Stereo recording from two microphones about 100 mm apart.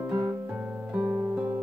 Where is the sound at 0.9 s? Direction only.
15° right (ahead or behind).